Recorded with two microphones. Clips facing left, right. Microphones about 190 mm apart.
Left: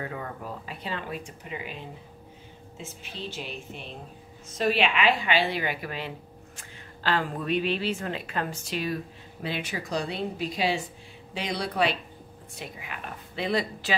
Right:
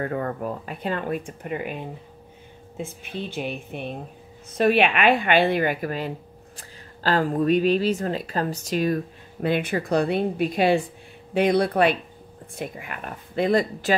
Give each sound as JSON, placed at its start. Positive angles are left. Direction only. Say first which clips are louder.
{"t": 0.0, "sound": "a woman's voice", "louder": "right 9 dB", "side_deg": -55}